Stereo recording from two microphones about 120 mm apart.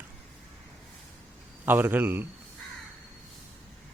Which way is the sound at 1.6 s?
15° right (ahead or behind).